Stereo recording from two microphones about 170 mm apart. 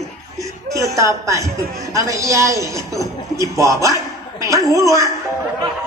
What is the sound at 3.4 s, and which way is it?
A man's voice, 20° right (ahead or behind).